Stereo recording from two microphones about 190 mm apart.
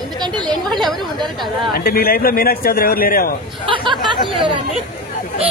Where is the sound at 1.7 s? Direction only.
55° left (ahead or behind).